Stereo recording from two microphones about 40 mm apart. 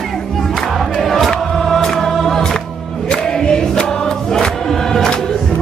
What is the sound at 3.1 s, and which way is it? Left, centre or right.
Choir, left.